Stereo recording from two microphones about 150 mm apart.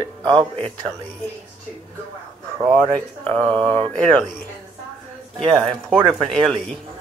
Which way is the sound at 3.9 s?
5° left (ahead or behind).